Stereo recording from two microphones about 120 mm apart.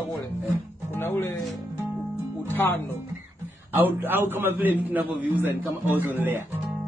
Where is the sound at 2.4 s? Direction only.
15° left (ahead or behind).